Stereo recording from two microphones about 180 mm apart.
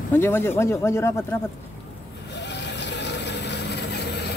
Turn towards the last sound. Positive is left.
turn(degrees=70)  # may be behind; listen again after turning